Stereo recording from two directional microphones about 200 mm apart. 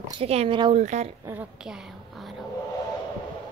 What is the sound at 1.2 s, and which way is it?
A woman's voice, 5° right (ahead or behind).